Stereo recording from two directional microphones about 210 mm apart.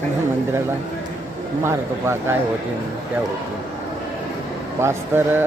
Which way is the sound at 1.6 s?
10° right (ahead or behind).